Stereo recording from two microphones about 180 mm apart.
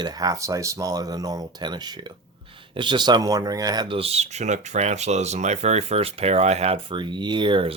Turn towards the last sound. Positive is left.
turn(degrees=-25)  # may be behind; listen again after turning